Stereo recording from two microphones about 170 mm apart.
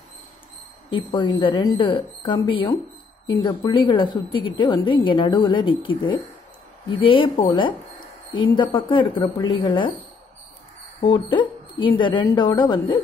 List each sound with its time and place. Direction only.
0.8 s a woman's voice: 30° left (ahead or behind)
8.7 s a woman's voice: 30° left (ahead or behind)
11.1 s a woman's voice: 25° left (ahead or behind)